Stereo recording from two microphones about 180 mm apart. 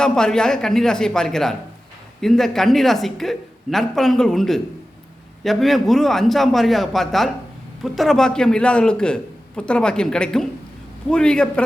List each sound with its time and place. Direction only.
0.0 s a man's voice: 5° left (ahead or behind)